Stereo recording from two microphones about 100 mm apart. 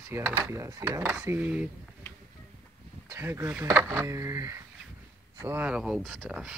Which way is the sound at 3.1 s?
25° right (ahead or behind).